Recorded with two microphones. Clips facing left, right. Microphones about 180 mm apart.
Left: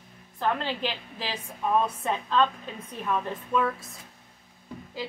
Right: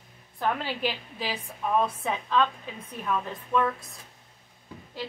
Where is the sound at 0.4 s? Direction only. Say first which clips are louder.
Even; 10° right (ahead or behind).